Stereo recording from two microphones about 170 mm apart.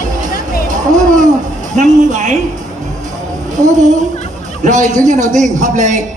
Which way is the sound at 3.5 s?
45° right (ahead or behind).